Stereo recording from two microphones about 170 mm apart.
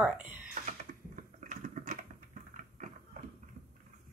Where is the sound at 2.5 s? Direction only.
50° right (ahead or behind).